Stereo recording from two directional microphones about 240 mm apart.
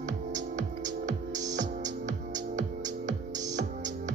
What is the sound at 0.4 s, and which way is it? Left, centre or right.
Music, right.